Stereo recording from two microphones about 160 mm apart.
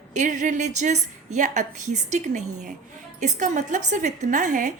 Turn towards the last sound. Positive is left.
turn(degrees=-50)  # may be behind; listen again after turning